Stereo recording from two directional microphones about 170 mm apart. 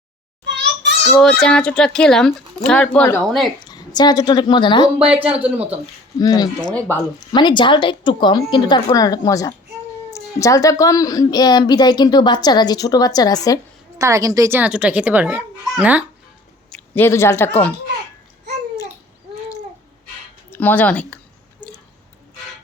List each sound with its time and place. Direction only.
0.4 s a sound: 90° right
1.2 s speech: 5° left (ahead or behind)
3.6 s speech: 25° left (ahead or behind)
4.9 s a child's voice: 5° right (ahead or behind)
5.8 s speech: 25° left (ahead or behind)
6.7 s speech: 10° left (ahead or behind)
7.3 s speech: 25° left (ahead or behind)
14.0 s a child's voice: 20° right (ahead or behind)
16.6 s speech: 5° left (ahead or behind)
20.5 s speech: 10° left (ahead or behind)
21.6 s a sound: 10° left (ahead or behind)